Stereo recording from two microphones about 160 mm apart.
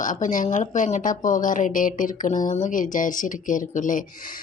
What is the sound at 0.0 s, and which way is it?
Speech, 55° left (ahead or behind).